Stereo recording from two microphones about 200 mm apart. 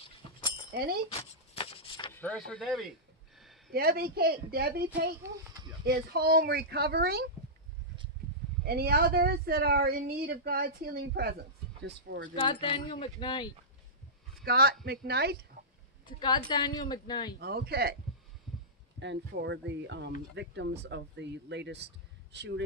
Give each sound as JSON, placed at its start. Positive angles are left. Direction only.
{"t": 0.7, "sound": "a woman's voice", "side_deg": -50}
{"t": 1.1, "sound": "a sound", "side_deg": 30}
{"t": 2.1, "sound": "speech", "side_deg": 5}
{"t": 3.7, "sound": "a woman's voice", "side_deg": -50}
{"t": 5.2, "sound": "a child's voice", "side_deg": -15}
{"t": 5.9, "sound": "a woman's voice", "side_deg": -50}
{"t": 8.6, "sound": "a woman's voice", "side_deg": -50}
{"t": 12.4, "sound": "speech", "side_deg": 25}
{"t": 14.4, "sound": "a man's voice", "side_deg": -50}
{"t": 16.1, "sound": "speech", "side_deg": 20}
{"t": 17.4, "sound": "a woman's voice", "side_deg": -50}
{"t": 18.9, "sound": "speech", "side_deg": -60}